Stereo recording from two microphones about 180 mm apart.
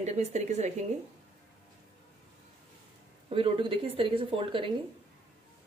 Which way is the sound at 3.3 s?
30° right (ahead or behind).